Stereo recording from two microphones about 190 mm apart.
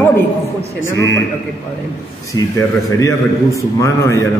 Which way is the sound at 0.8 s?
15° left (ahead or behind).